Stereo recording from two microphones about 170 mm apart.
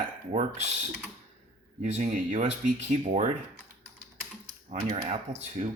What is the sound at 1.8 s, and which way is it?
Speech, 45° right (ahead or behind).